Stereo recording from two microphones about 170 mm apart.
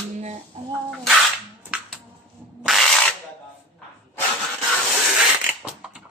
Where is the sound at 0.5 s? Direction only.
35° right (ahead or behind).